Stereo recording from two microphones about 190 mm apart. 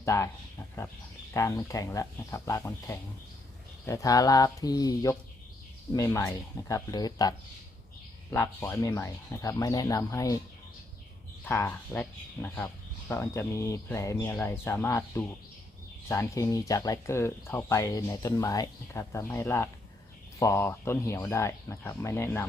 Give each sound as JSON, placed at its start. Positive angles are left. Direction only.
{"t": 0.0, "sound": "speech", "side_deg": 15}
{"t": 1.3, "sound": "speech", "side_deg": 15}
{"t": 11.4, "sound": "speech", "side_deg": 10}